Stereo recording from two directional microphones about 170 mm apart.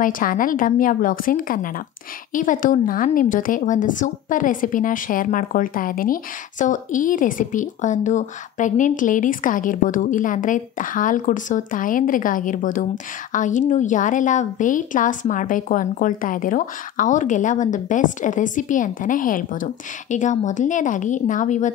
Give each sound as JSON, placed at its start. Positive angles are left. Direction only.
{"t": 0.0, "sound": "a woman's voice", "side_deg": 55}